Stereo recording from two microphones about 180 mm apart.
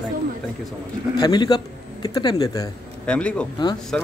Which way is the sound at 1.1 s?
20° left (ahead or behind).